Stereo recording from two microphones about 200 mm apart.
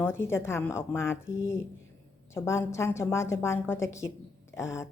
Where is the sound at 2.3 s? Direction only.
15° left (ahead or behind).